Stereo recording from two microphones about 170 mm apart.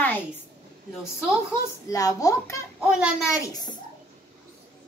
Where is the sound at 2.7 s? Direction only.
5° right (ahead or behind).